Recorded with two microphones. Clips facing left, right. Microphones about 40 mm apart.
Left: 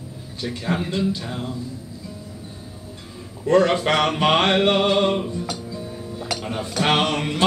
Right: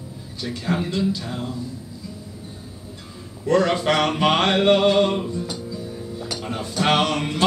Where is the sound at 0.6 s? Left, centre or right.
Centre.